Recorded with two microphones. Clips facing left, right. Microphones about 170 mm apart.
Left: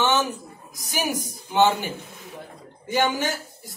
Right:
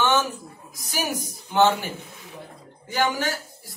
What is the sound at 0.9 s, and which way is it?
Speech, 15° left (ahead or behind).